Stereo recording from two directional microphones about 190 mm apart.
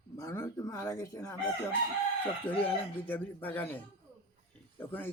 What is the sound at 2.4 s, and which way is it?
Speech, 10° left (ahead or behind).